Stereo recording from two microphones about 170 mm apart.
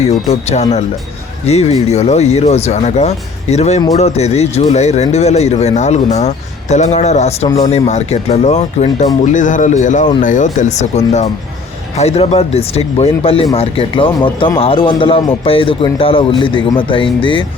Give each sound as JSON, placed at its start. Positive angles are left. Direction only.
{"t": 0.0, "sound": "speech", "side_deg": 40}